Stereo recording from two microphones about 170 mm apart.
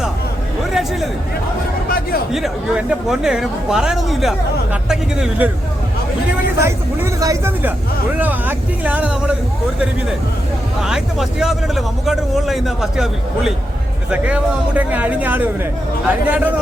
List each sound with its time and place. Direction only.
2.3 s a woman's voice: centre (ahead or behind)
6.6 s a man's voice: 15° right (ahead or behind)
10.8 s a woman's voice: 5° right (ahead or behind)